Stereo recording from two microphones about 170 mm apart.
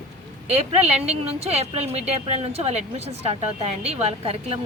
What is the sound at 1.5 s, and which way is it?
A woman's voice, 40° right (ahead or behind).